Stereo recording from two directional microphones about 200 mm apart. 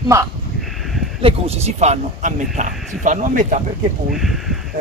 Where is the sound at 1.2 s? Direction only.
30° right (ahead or behind).